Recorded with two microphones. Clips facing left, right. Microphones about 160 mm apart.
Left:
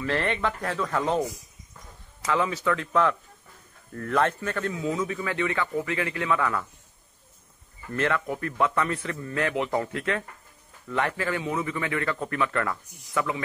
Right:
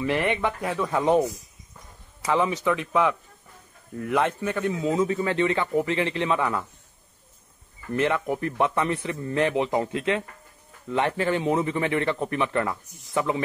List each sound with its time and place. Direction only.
0.0 s speech: 15° right (ahead or behind)
2.2 s speech: 15° right (ahead or behind)
4.8 s speech: 30° right (ahead or behind)
7.9 s speech: 20° right (ahead or behind)